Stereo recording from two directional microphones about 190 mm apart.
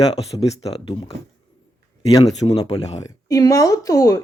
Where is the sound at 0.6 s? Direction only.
30° left (ahead or behind).